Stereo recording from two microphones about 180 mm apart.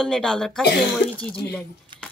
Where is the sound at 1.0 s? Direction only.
60° left (ahead or behind).